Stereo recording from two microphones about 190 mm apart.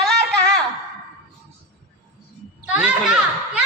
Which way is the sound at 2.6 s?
5° right (ahead or behind).